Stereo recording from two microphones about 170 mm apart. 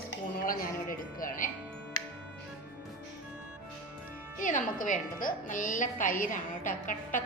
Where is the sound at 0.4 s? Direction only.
55° left (ahead or behind).